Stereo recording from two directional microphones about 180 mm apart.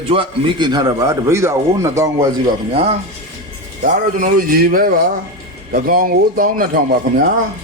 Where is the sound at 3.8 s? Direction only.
45° right (ahead or behind).